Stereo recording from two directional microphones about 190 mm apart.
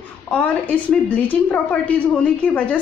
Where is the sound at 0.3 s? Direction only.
5° left (ahead or behind).